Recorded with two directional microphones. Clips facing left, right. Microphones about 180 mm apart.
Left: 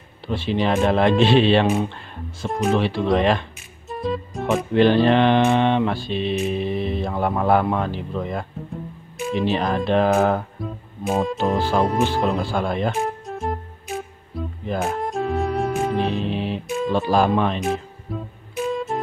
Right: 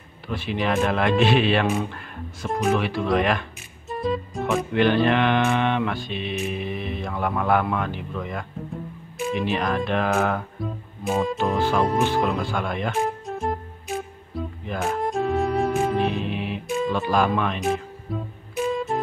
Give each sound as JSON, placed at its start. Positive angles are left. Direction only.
{"t": 0.3, "sound": "speech", "side_deg": 30}
{"t": 2.4, "sound": "music", "side_deg": 0}
{"t": 2.7, "sound": "speech", "side_deg": 30}
{"t": 3.9, "sound": "music", "side_deg": 0}
{"t": 4.7, "sound": "speech", "side_deg": 35}
{"t": 9.5, "sound": "speech", "side_deg": 30}
{"t": 10.6, "sound": "music", "side_deg": 0}
{"t": 12.3, "sound": "speech", "side_deg": 35}
{"t": 13.0, "sound": "music", "side_deg": 0}
{"t": 16.1, "sound": "music", "side_deg": 30}
{"t": 16.6, "sound": "music", "side_deg": 0}
{"t": 17.1, "sound": "speech", "side_deg": 30}
{"t": 17.6, "sound": "music", "side_deg": 0}